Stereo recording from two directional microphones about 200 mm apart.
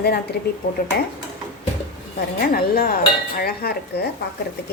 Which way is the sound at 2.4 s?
50° left (ahead or behind).